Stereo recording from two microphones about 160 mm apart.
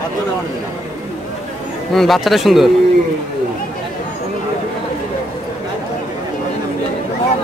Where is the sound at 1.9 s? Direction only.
Centre (ahead or behind).